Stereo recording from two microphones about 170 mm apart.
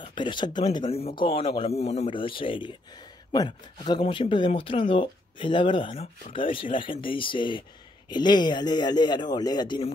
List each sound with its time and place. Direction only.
0.0 s speech: 30° left (ahead or behind)